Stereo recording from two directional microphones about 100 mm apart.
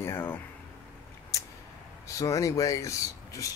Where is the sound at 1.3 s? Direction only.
35° left (ahead or behind).